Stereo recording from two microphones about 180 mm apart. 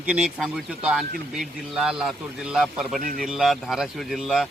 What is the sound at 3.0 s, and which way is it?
Speech, 50° right (ahead or behind).